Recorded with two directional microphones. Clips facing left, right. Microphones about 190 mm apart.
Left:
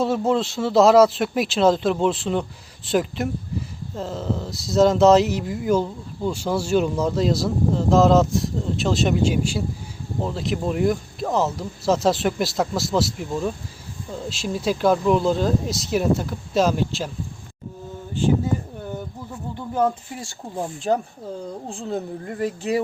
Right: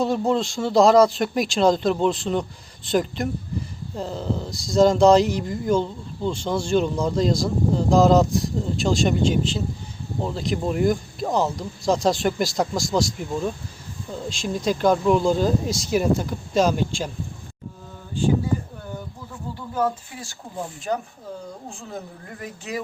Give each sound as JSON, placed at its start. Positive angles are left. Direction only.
{"t": 0.0, "sound": "speech", "side_deg": 5}
{"t": 19.5, "sound": "a sound", "side_deg": 20}
{"t": 21.7, "sound": "speech", "side_deg": 30}